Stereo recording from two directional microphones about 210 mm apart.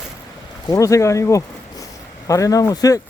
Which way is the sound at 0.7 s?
15° left (ahead or behind).